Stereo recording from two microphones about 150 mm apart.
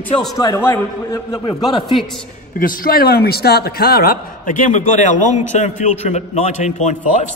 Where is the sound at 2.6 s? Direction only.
75° left (ahead or behind).